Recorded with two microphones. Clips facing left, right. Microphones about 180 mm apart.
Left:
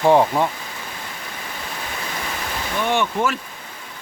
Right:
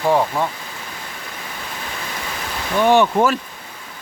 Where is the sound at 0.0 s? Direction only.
20° left (ahead or behind).